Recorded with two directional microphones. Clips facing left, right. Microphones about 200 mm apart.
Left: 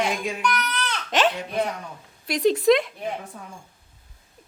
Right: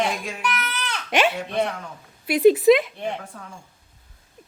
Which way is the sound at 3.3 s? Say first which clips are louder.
Even; 20° left (ahead or behind).